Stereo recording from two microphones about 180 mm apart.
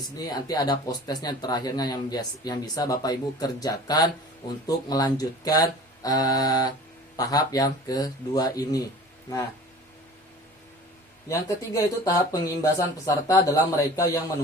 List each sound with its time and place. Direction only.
0.3 s speech: 20° left (ahead or behind)
11.3 s speech: 15° left (ahead or behind)